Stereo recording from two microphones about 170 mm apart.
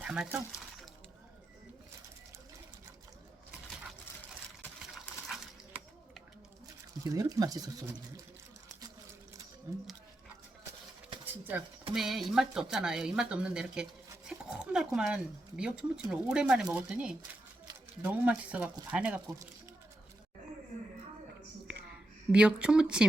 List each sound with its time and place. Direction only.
0.0 s speech: 5° right (ahead or behind)
5.3 s a sound: centre (ahead or behind)
7.0 s speech: 20° right (ahead or behind)
9.7 s speech: 20° right (ahead or behind)
11.4 s speech: 5° right (ahead or behind)
21.7 s a sound: 5° right (ahead or behind)